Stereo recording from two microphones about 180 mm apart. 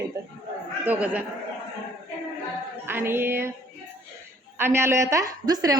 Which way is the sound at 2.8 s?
10° right (ahead or behind).